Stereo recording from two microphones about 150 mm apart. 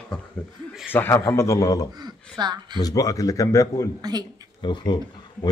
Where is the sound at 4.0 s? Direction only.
25° right (ahead or behind).